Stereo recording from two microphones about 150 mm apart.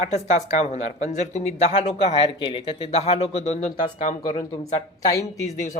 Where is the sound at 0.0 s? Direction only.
50° left (ahead or behind).